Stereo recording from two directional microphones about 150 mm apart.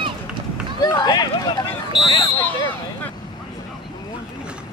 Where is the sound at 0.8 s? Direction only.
30° left (ahead or behind).